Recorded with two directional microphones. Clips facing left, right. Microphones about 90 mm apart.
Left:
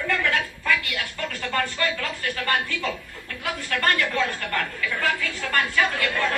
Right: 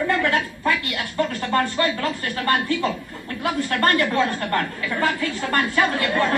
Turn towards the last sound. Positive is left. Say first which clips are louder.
# right 3 dB
turn(degrees=-30)  # may be behind; listen again after turning